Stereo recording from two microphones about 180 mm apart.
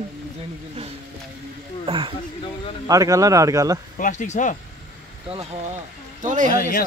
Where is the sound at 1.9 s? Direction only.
30° right (ahead or behind).